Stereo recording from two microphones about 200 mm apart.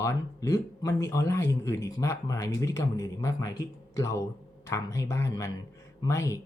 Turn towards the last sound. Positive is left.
turn(degrees=15)  # may be behind; listen again after turning